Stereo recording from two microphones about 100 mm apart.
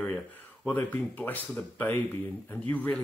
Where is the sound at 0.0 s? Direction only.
15° left (ahead or behind).